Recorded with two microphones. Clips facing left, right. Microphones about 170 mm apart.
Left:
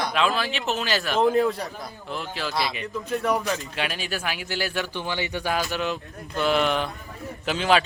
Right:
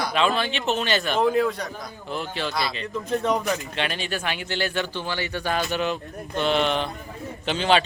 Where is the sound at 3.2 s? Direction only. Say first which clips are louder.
Even; 20° right (ahead or behind).